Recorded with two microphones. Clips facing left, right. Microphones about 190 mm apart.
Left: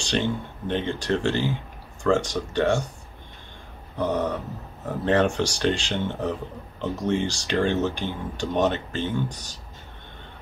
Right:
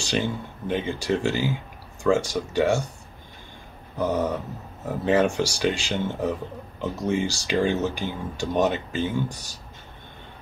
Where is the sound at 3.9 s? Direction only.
10° right (ahead or behind).